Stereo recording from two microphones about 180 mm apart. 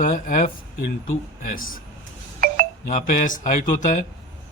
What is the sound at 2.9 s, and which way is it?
Speech, 45° left (ahead or behind).